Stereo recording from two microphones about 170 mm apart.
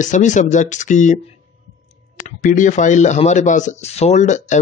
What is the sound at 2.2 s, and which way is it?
Speech, 50° left (ahead or behind).